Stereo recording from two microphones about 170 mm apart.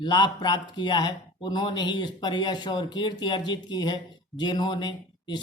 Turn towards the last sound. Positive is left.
turn(degrees=25)  # may be behind; listen again after turning